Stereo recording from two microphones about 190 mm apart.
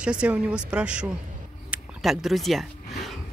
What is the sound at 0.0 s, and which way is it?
Speech, 5° right (ahead or behind).